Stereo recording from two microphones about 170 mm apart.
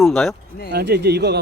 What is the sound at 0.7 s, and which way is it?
Speech, 75° right (ahead or behind).